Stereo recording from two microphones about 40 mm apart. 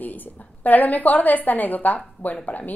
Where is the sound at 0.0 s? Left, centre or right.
Left.